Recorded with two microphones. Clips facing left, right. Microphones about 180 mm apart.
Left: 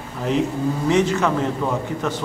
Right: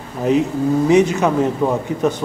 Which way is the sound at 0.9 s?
15° right (ahead or behind).